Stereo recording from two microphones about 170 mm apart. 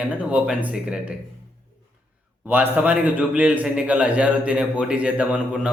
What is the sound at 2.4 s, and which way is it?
A man's voice, 10° right (ahead or behind).